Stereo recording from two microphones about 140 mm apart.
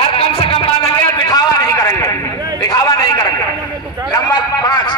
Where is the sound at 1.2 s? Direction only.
25° left (ahead or behind).